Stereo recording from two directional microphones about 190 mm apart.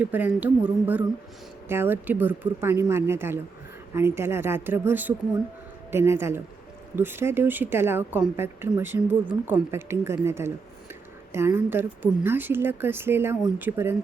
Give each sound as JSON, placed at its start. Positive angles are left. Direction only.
{"t": 0.0, "sound": "a woman's voice", "side_deg": -10}